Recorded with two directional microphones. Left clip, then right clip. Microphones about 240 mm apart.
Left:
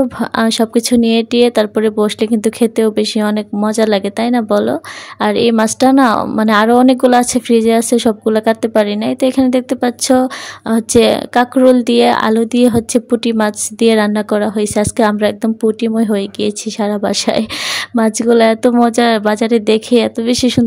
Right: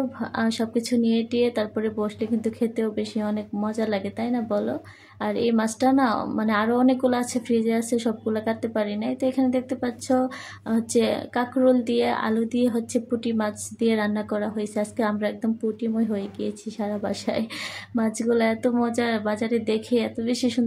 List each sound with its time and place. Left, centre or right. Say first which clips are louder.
0.2 s a woman's voice: left 12 dB; left